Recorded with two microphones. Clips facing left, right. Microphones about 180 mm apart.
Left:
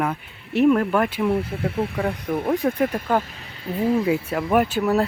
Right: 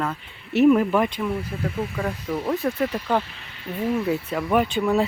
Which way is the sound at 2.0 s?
55° left (ahead or behind).